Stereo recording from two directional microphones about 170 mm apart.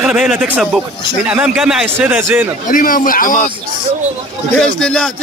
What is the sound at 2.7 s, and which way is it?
Speech, 50° left (ahead or behind).